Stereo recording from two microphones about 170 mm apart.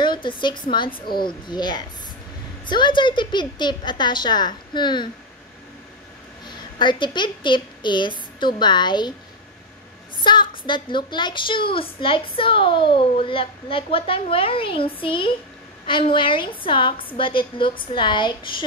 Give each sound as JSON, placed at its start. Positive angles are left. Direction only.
{"t": 0.0, "sound": "a woman's voice", "side_deg": 30}
{"t": 6.4, "sound": "a woman's voice", "side_deg": 25}
{"t": 10.2, "sound": "a woman's voice", "side_deg": 25}